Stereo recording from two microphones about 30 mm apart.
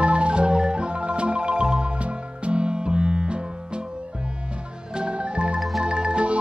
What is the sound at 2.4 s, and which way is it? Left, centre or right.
Music, right.